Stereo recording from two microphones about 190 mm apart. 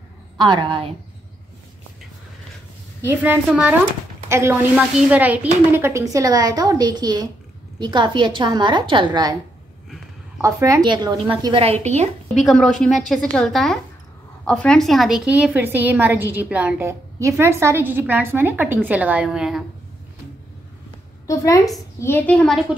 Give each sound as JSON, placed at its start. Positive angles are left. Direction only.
{"t": 0.4, "sound": "a woman's voice", "side_deg": -25}
{"t": 3.1, "sound": "a woman's voice", "side_deg": -10}
{"t": 10.4, "sound": "a woman's voice", "side_deg": -15}
{"t": 12.4, "sound": "a woman's voice", "side_deg": 5}
{"t": 21.3, "sound": "a woman's voice", "side_deg": 20}